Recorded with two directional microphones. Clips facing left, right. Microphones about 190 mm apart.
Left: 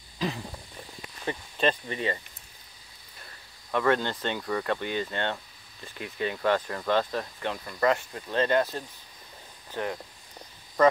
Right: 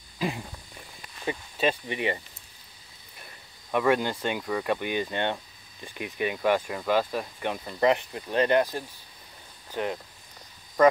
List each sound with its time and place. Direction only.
1.2 s speech: 10° right (ahead or behind)
9.7 s cricket: 20° right (ahead or behind)